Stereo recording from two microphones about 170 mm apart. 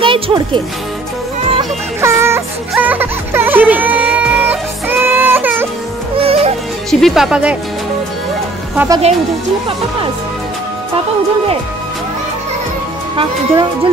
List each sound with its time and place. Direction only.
0.0 s speech: 30° right (ahead or behind)
1.6 s music: 15° right (ahead or behind)
6.1 s music: 35° right (ahead or behind)
6.9 s speech: centre (ahead or behind)
8.7 s speech: 20° right (ahead or behind)
13.1 s speech: 30° right (ahead or behind)